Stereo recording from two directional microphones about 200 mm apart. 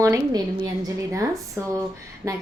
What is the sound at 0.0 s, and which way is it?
Speech, 20° right (ahead or behind).